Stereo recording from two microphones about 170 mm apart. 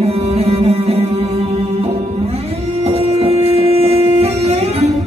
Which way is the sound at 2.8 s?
35° right (ahead or behind).